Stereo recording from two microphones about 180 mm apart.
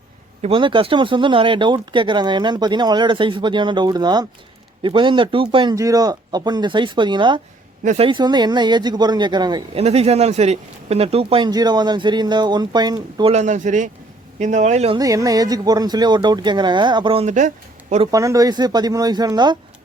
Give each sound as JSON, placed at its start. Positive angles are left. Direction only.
{"t": 0.4, "sound": "speech", "side_deg": -30}
{"t": 9.8, "sound": "speech", "side_deg": -35}
{"t": 13.3, "sound": "speech", "side_deg": -40}
{"t": 14.9, "sound": "speech", "side_deg": -20}
{"t": 18.1, "sound": "speech", "side_deg": -20}